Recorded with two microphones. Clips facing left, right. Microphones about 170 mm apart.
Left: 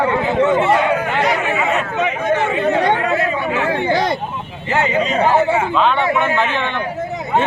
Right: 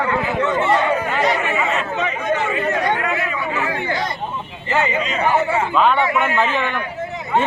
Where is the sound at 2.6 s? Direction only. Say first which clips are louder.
Left 4 dB; 25° left (ahead or behind).